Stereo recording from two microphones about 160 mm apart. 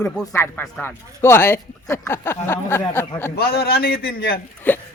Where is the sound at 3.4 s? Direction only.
75° left (ahead or behind).